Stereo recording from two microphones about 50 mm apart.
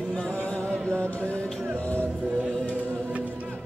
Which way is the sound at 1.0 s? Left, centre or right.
Left.